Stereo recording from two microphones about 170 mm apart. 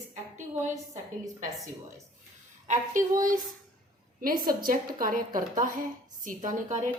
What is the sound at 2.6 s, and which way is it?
Speech, 45° right (ahead or behind).